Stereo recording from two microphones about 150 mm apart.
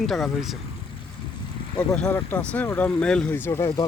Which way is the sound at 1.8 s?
10° left (ahead or behind).